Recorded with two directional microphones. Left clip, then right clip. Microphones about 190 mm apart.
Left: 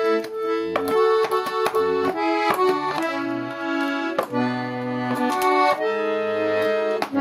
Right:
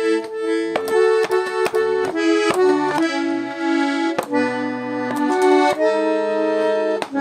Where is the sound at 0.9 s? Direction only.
25° right (ahead or behind).